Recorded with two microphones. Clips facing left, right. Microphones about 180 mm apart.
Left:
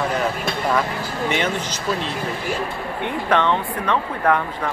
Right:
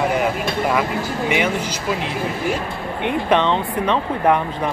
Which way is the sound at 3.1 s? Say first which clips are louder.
Right 2 dB; 20° right (ahead or behind).